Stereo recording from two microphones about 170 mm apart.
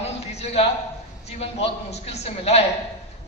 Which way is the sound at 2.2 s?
40° left (ahead or behind).